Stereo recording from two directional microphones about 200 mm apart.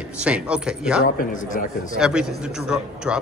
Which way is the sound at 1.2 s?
40° left (ahead or behind).